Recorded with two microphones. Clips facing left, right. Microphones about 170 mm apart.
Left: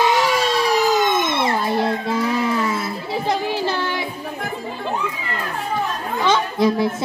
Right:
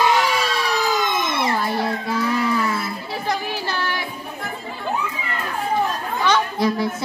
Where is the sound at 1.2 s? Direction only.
25° left (ahead or behind).